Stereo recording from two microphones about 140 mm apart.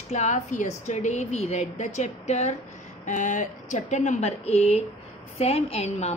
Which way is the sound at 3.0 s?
65° left (ahead or behind).